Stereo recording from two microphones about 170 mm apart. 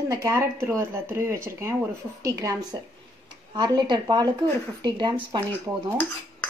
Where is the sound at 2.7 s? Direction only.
20° right (ahead or behind).